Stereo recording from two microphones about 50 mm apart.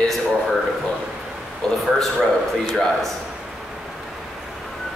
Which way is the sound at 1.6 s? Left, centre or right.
Centre.